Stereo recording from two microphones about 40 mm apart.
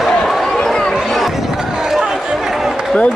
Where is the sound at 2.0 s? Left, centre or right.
Centre.